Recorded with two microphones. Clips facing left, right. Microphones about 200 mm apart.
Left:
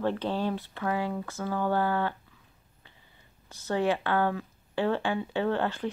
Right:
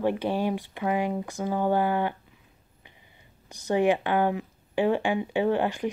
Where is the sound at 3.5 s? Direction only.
15° right (ahead or behind).